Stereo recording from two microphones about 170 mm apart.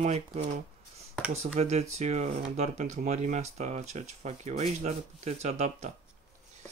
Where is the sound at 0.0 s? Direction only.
40° right (ahead or behind).